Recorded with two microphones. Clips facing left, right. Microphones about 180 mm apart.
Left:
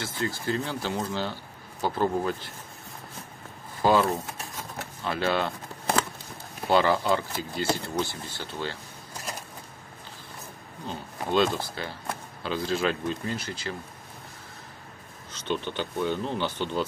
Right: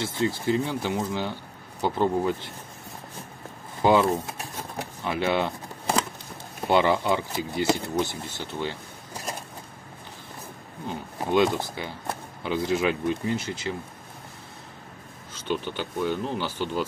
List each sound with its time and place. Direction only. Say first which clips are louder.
0.0 s speech: right 5 dB; 25° right (ahead or behind)
3.8 s speech: right 2 dB; 20° right (ahead or behind)
4.7 s a sound: right 2 dB; 15° right (ahead or behind)
6.7 s speech: right 1 dB; 20° right (ahead or behind)
10.9 s speech: right 3 dB; 15° right (ahead or behind)
15.3 s speech: right 1 dB; 10° right (ahead or behind)